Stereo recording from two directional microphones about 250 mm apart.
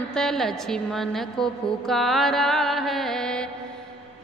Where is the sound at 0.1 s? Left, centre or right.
Centre.